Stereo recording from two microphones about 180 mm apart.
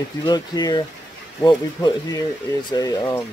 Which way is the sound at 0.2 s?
20° left (ahead or behind).